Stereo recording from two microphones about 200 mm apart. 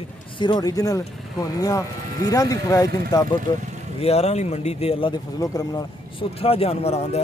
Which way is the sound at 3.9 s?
30° left (ahead or behind).